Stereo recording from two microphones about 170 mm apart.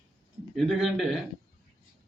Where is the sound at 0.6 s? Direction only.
Centre (ahead or behind).